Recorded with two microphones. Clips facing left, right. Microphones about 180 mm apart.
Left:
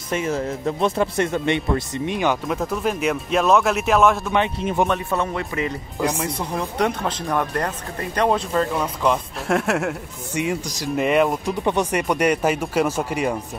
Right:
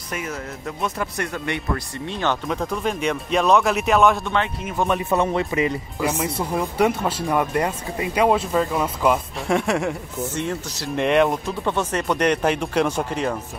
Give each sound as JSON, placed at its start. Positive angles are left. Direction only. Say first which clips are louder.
{"t": 0.1, "sound": "speech", "louder": "left 7 dB", "side_deg": 30}
{"t": 4.8, "sound": "speech", "louder": "left 1 dB", "side_deg": 20}
{"t": 5.1, "sound": "speech", "louder": "right 3 dB", "side_deg": -20}
{"t": 6.2, "sound": "speech", "louder": "right 2 dB", "side_deg": -5}
{"t": 11.4, "sound": "speech", "louder": "left 3 dB", "side_deg": 15}